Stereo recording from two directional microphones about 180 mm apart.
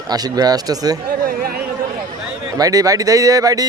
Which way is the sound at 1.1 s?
55° right (ahead or behind).